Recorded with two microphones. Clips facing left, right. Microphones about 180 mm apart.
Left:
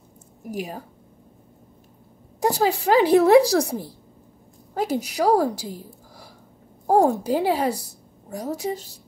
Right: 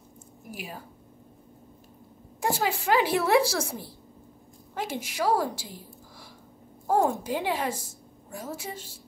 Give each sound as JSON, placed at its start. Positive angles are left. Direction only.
{"t": 0.4, "sound": "a woman's voice", "side_deg": 40}
{"t": 2.4, "sound": "a woman's voice", "side_deg": 40}